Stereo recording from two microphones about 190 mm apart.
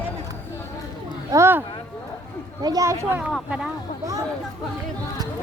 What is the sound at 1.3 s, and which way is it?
Speech, 15° right (ahead or behind).